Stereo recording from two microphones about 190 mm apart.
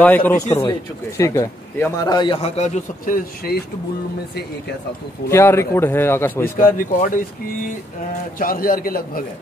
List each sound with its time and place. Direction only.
0.0 s a man's voice: 10° left (ahead or behind)
0.5 s speech: 20° left (ahead or behind); by 3.2 s 35° left (ahead or behind)
3.4 s a man's voice: 50° left (ahead or behind)
5.3 s a man's voice: 15° left (ahead or behind)
8.4 s a man's voice: 50° left (ahead or behind)